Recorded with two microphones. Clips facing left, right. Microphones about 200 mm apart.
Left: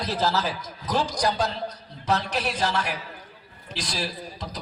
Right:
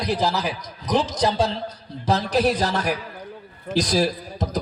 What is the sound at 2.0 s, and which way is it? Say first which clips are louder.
A man's voice: right 6 dB; 35° right (ahead or behind).